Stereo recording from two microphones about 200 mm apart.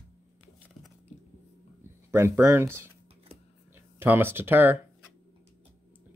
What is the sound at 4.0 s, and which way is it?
Speech, 10° right (ahead or behind).